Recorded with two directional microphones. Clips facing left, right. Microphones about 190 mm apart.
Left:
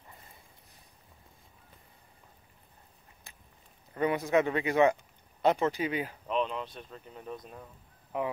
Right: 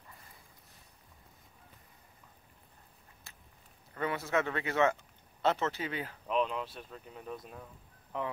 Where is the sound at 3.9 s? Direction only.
15° left (ahead or behind).